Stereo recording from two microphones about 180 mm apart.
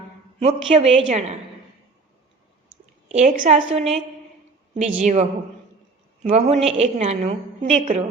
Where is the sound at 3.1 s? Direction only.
45° right (ahead or behind).